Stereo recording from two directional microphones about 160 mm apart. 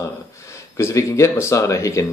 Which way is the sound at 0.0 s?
15° left (ahead or behind).